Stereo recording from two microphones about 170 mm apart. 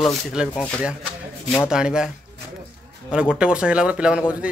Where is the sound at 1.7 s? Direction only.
5° right (ahead or behind).